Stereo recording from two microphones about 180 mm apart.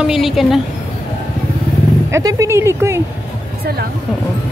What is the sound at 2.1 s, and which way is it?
Speech, 15° right (ahead or behind).